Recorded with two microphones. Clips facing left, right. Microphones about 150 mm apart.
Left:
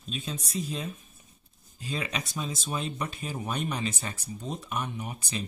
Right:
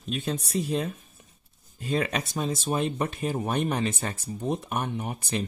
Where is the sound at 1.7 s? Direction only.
55° right (ahead or behind).